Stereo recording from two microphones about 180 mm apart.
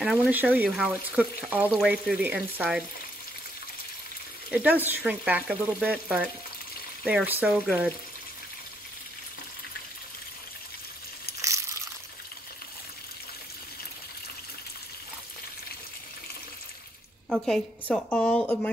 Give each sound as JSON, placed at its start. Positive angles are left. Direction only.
{"t": 0.0, "sound": "speech", "side_deg": -5}
{"t": 4.5, "sound": "speech", "side_deg": -10}
{"t": 11.4, "sound": "a sound", "side_deg": -15}
{"t": 17.3, "sound": "a woman's voice", "side_deg": 5}